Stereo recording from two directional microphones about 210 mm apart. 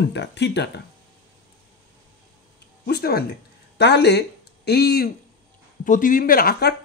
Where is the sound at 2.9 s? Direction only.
50° left (ahead or behind).